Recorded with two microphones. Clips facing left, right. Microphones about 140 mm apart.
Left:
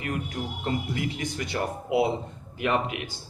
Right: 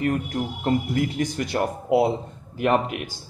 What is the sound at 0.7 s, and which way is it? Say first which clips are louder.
A man's voice: right 7 dB; 45° right (ahead or behind).